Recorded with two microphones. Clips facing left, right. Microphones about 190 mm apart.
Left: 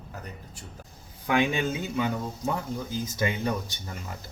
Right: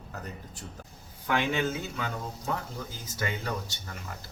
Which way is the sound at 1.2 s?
15° left (ahead or behind).